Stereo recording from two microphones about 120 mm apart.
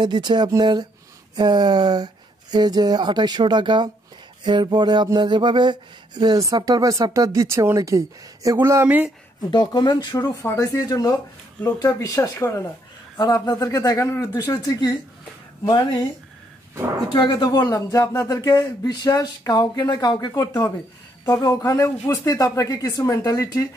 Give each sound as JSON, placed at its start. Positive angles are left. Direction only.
{"t": 0.0, "sound": "a sound", "side_deg": -40}
{"t": 8.5, "sound": "speech", "side_deg": -25}
{"t": 8.8, "sound": "speech", "side_deg": -10}
{"t": 9.5, "sound": "speech", "side_deg": 40}
{"t": 13.2, "sound": "speech", "side_deg": 35}
{"t": 17.1, "sound": "speech", "side_deg": 35}